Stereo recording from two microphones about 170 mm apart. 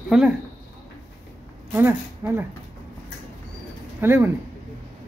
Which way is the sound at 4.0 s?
15° right (ahead or behind).